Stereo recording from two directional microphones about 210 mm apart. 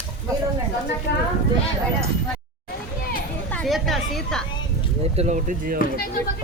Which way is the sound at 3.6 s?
Centre (ahead or behind).